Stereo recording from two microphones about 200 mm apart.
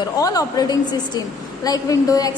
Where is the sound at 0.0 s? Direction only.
15° left (ahead or behind).